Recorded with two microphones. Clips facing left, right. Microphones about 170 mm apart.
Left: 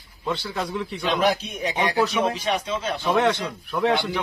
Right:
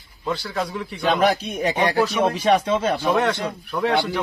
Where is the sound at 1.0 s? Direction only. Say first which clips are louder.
Right 3 dB; 60° right (ahead or behind).